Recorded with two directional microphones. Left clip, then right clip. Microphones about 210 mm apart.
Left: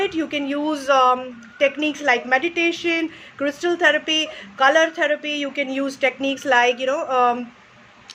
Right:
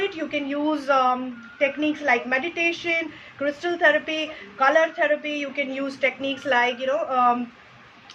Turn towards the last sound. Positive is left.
turn(degrees=55)  # may be behind; listen again after turning